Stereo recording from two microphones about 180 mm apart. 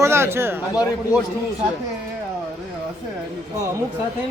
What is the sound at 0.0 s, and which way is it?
Speech, 15° right (ahead or behind).